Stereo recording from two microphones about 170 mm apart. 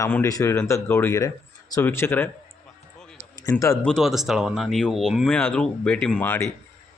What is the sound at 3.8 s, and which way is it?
Speech, centre (ahead or behind).